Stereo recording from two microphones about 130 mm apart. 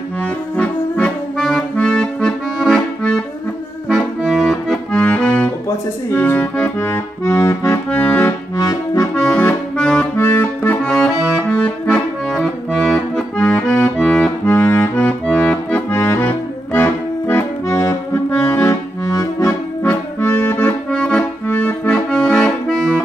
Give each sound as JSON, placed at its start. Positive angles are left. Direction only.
{"t": 0.2, "sound": "accordion", "side_deg": 10}
{"t": 8.5, "sound": "accordion", "side_deg": 25}
{"t": 9.1, "sound": "accordion", "side_deg": 10}
{"t": 10.1, "sound": "accordion", "side_deg": 20}
{"t": 13.4, "sound": "accordion", "side_deg": 15}
{"t": 14.4, "sound": "accordion", "side_deg": 20}